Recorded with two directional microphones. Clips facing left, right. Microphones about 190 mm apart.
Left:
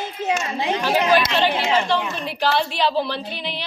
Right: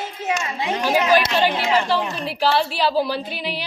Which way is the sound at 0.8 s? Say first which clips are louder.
Right 1 dB; 10° right (ahead or behind).